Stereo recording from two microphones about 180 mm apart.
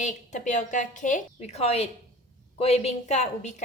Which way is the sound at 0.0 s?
45° left (ahead or behind).